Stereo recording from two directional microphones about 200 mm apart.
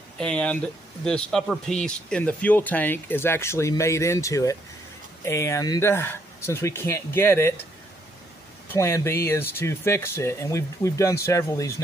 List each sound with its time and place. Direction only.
0.2 s speech: 5° left (ahead or behind)
8.7 s speech: 15° left (ahead or behind)